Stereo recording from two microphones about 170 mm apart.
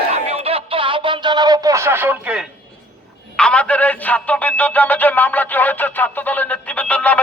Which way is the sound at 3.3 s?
5° left (ahead or behind).